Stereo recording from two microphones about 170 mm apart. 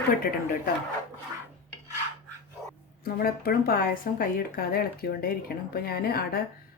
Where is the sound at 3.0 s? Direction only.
60° left (ahead or behind).